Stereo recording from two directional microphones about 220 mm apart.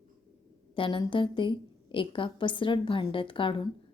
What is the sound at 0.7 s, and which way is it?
A woman's voice, 20° left (ahead or behind).